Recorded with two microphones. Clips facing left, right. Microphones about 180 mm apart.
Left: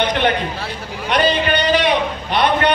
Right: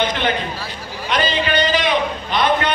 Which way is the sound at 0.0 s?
60° left (ahead or behind).